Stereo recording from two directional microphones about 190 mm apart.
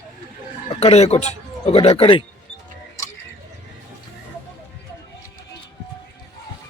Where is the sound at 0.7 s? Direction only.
35° left (ahead or behind).